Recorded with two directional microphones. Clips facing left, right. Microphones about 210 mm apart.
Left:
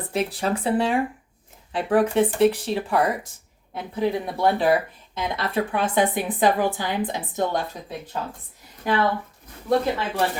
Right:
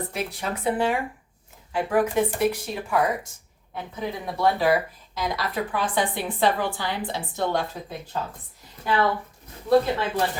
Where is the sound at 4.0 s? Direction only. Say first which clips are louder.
Left 5 dB; 30° left (ahead or behind).